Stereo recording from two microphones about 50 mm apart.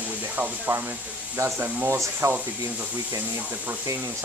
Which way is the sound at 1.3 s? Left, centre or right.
Right.